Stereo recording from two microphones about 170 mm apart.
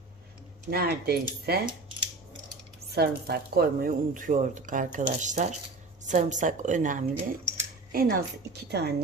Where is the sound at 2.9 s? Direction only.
70° right (ahead or behind).